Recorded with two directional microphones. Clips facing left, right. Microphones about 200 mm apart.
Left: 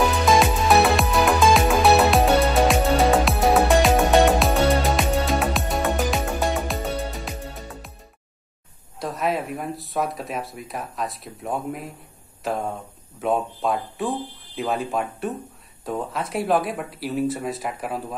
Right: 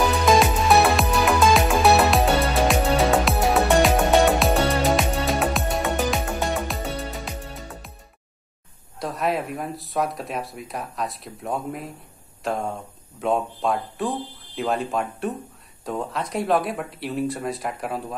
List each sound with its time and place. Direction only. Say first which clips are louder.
0.2 s music: even; centre (ahead or behind)
9.0 s speech: even; centre (ahead or behind)